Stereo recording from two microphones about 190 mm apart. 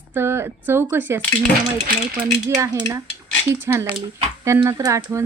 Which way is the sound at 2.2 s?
15° right (ahead or behind).